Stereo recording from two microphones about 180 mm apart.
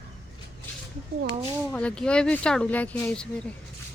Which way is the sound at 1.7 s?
5° left (ahead or behind).